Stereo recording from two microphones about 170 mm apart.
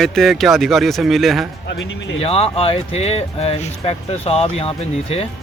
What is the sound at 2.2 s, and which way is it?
Speech, 35° left (ahead or behind).